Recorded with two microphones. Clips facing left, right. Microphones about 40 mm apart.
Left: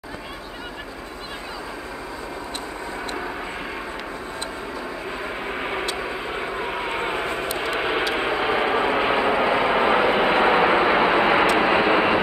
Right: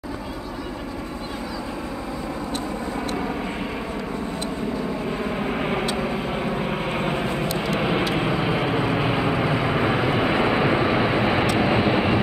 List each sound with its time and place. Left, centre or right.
5.2 s vehicle: centre; by 12.2 s left